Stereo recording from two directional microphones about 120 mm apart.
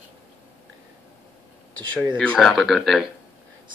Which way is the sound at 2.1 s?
10° left (ahead or behind).